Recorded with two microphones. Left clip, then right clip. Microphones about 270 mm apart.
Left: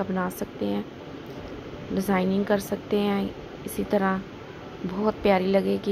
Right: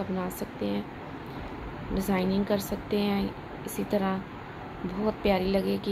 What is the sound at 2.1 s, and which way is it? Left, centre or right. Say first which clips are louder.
Speech: left 4 dB; centre.